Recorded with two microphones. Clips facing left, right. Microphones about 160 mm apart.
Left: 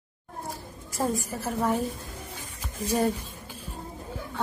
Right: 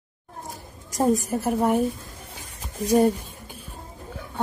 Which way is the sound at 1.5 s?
15° right (ahead or behind).